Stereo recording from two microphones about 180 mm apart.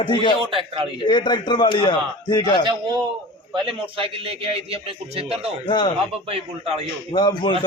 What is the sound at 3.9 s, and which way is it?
A man's voice, 30° right (ahead or behind).